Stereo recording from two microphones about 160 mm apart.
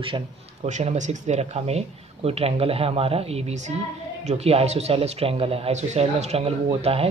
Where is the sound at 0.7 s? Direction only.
45° right (ahead or behind).